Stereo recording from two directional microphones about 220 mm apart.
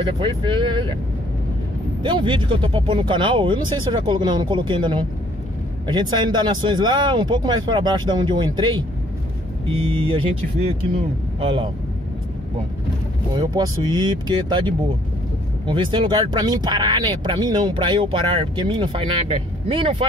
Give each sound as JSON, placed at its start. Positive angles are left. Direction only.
{"t": 0.2, "sound": "speech", "side_deg": -20}
{"t": 2.0, "sound": "speech", "side_deg": -20}
{"t": 11.3, "sound": "speech", "side_deg": -20}
{"t": 13.4, "sound": "speech", "side_deg": -20}